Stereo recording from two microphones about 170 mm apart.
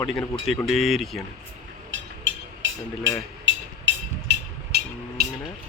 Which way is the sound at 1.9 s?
90° right.